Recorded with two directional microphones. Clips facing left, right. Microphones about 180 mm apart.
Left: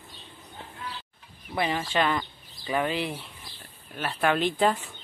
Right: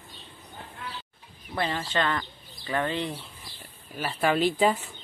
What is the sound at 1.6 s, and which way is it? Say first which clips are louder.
Speech: left 2 dB; 15° left (ahead or behind).